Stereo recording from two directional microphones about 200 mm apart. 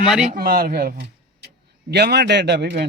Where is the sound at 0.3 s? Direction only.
50° right (ahead or behind).